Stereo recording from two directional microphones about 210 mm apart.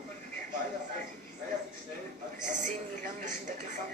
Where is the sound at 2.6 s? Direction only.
35° right (ahead or behind).